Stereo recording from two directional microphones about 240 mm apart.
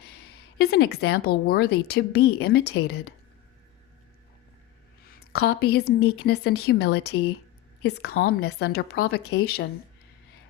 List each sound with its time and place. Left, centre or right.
0.6 s a woman's voice: left
5.0 s a woman's voice: left